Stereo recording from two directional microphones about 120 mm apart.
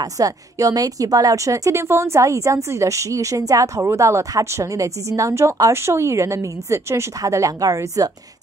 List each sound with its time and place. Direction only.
0.0 s a woman's voice: 30° right (ahead or behind)